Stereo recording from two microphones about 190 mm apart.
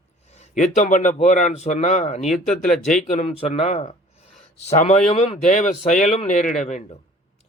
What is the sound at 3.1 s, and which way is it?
Speech, 35° left (ahead or behind).